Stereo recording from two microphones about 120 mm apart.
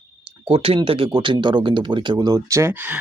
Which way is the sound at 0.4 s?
50° right (ahead or behind).